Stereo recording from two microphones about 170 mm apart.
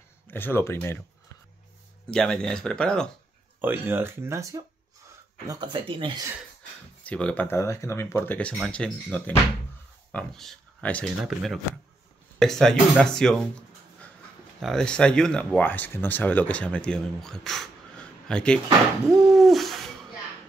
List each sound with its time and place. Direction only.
0.3 s speech: 10° left (ahead or behind)
2.0 s speech: 5° left (ahead or behind)
3.6 s speech: 10° right (ahead or behind); by 6.2 s 30° right (ahead or behind)
7.1 s speech: 5° left (ahead or behind)
19.2 s owl: centre (ahead or behind)